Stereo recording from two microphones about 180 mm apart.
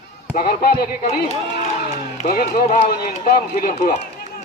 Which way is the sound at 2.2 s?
55° left (ahead or behind).